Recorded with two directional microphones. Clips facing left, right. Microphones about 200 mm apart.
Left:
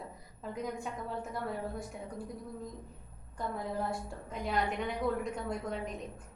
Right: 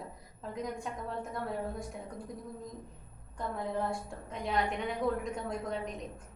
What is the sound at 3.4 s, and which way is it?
A woman's voice, 5° left (ahead or behind).